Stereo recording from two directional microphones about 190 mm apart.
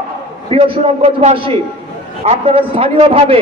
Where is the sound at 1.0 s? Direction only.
30° right (ahead or behind).